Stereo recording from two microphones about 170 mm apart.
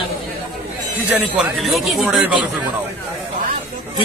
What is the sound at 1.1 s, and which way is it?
A man's voice, 5° right (ahead or behind).